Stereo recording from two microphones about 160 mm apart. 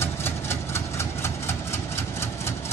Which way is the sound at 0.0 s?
15° left (ahead or behind).